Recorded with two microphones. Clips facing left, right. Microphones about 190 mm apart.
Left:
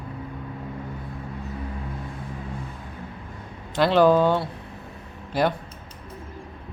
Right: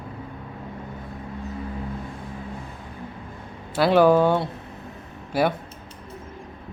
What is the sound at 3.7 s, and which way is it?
Speech, 10° right (ahead or behind).